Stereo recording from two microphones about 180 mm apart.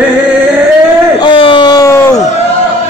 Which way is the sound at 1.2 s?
25° left (ahead or behind).